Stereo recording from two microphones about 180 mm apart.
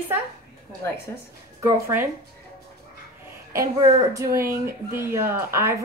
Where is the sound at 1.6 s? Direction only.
10° right (ahead or behind).